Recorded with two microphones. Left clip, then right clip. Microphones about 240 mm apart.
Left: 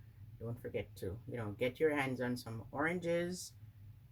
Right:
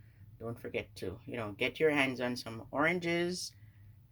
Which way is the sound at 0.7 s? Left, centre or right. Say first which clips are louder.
Right 3 dB; centre.